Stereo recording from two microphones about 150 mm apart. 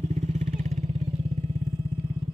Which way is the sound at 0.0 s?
50° right (ahead or behind).